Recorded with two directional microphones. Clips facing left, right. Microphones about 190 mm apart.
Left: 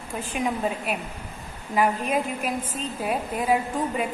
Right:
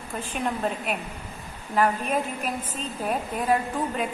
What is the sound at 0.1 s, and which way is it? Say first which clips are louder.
A woman's voice: left 2 dB; 10° left (ahead or behind).